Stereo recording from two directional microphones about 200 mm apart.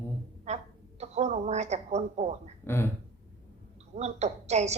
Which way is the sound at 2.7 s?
10° left (ahead or behind).